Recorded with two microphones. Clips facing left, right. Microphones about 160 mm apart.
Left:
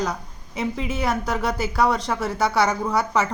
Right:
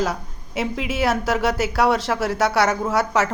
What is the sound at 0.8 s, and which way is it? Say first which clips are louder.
Speech: right 2 dB; 90° right.